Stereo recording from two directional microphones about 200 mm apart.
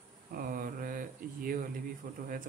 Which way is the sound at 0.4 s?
45° right (ahead or behind).